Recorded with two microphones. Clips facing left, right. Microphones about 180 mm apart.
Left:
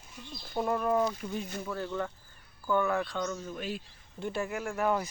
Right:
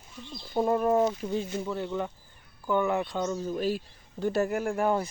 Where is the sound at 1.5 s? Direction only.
20° right (ahead or behind).